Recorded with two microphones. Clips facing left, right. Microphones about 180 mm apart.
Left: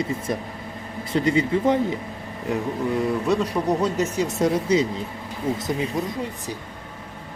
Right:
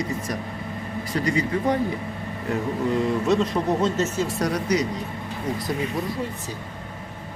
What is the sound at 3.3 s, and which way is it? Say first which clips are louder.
Speech: even; 10° left (ahead or behind).